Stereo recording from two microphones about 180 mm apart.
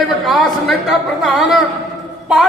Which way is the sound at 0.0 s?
Centre (ahead or behind).